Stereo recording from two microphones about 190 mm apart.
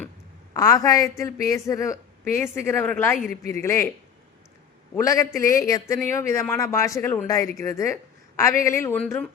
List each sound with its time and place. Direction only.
0.5 s a woman's voice: 20° left (ahead or behind)
4.9 s a woman's voice: 15° left (ahead or behind)